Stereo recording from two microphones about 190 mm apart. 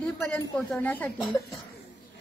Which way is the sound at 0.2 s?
5° left (ahead or behind).